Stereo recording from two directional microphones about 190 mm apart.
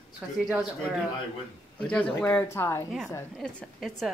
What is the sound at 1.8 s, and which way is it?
Speech, 5° left (ahead or behind).